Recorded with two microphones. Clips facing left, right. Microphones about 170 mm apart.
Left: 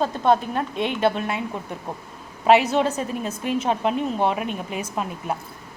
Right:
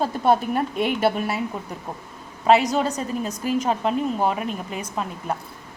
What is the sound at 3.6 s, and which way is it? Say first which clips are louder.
A woman's voice: even; centre (ahead or behind).